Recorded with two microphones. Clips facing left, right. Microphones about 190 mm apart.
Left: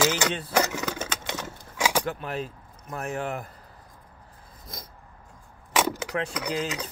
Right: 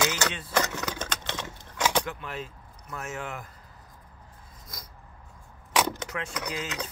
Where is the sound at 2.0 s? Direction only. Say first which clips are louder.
Left 5 dB; 35° left (ahead or behind).